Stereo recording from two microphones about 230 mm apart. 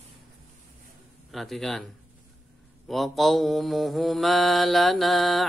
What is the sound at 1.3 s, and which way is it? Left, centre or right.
Mantra, centre.